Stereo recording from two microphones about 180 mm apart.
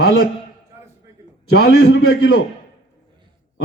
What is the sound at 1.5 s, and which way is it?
Speech, 60° left (ahead or behind).